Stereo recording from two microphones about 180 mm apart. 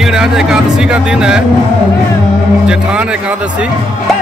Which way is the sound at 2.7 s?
5° right (ahead or behind).